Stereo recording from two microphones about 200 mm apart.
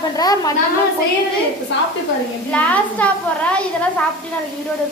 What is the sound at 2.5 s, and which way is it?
A woman's voice, 5° left (ahead or behind).